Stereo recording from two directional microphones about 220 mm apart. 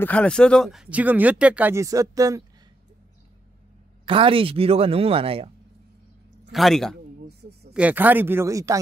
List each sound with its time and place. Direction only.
0.0 s speech: 5° left (ahead or behind); by 2.4 s 15° right (ahead or behind)
4.0 s speech: 25° right (ahead or behind)
6.5 s a man's voice: centre (ahead or behind)